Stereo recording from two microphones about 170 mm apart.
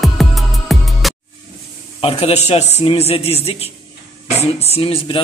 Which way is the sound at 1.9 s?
35° left (ahead or behind).